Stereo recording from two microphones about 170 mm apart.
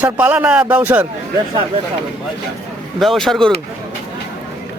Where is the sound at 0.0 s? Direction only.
10° right (ahead or behind).